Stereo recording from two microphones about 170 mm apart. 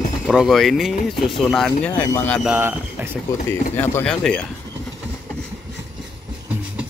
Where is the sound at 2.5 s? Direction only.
15° right (ahead or behind).